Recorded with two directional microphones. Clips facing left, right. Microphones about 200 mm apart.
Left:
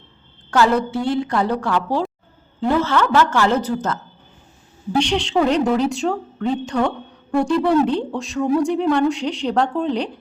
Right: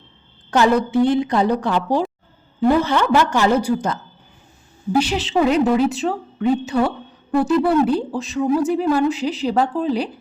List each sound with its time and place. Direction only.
0.5 s a woman's voice: 20° right (ahead or behind)